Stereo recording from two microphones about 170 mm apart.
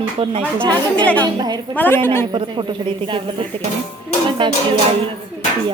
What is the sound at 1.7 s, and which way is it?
Speech, 10° left (ahead or behind).